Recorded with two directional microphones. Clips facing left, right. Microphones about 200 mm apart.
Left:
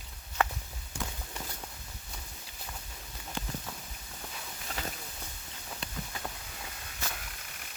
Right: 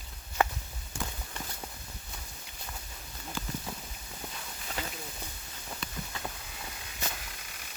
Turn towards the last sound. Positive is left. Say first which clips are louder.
# right 1 dB
turn(degrees=-15)  # may be behind; listen again after turning